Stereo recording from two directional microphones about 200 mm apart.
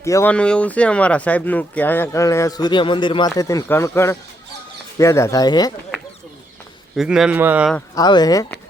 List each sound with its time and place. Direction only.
0.0 s speech: 15° left (ahead or behind)
6.9 s speech: centre (ahead or behind)
7.9 s speech: 20° left (ahead or behind)